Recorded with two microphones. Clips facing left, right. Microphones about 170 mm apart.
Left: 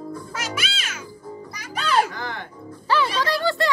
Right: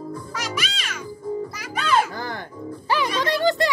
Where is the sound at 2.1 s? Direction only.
35° right (ahead or behind).